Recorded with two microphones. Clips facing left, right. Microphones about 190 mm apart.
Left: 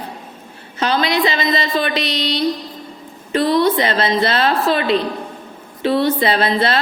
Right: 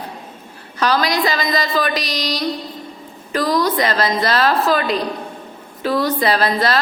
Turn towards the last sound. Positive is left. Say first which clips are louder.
# even
turn(degrees=25)  # may be behind; listen again after turning